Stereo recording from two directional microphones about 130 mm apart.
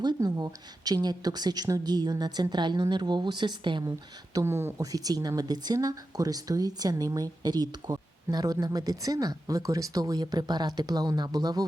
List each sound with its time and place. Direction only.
0.0 s a woman's voice: 30° right (ahead or behind)
4.4 s speech: 20° right (ahead or behind)